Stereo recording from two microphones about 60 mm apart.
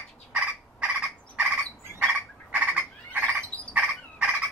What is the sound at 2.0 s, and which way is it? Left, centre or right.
Frog, right.